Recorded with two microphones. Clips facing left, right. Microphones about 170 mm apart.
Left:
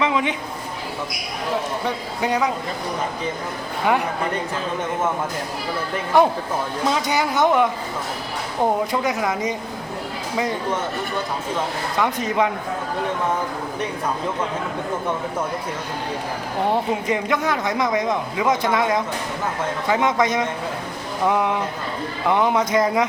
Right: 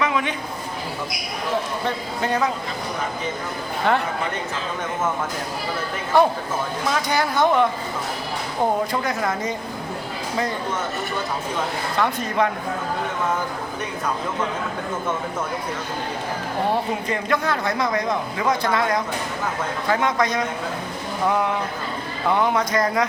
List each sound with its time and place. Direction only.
0.0 s a sound: 20° left (ahead or behind)
2.2 s speech: 15° left (ahead or behind)
6.1 s speech: 15° left (ahead or behind)
8.9 s speech: 15° left (ahead or behind)
11.9 s speech: 15° left (ahead or behind)
16.6 s speech: 20° left (ahead or behind)